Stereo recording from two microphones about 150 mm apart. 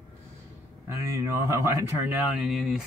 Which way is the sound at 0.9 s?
20° right (ahead or behind).